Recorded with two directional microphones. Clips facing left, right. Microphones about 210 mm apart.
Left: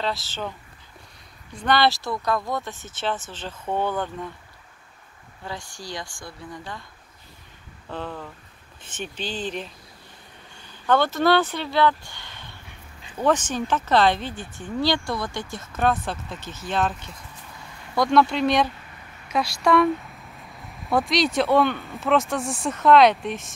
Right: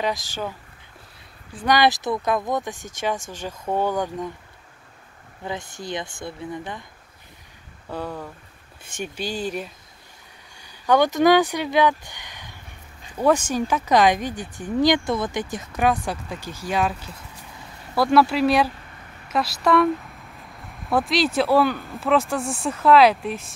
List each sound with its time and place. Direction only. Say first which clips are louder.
0.0 s speech: right 2 dB; 15° right (ahead or behind)
1.5 s speech: right 2 dB; 10° right (ahead or behind)
5.4 s speech: right 4 dB; 20° right (ahead or behind)
7.9 s speech: right 2 dB; 10° right (ahead or behind)
10.7 s speech: right 3 dB; 15° right (ahead or behind)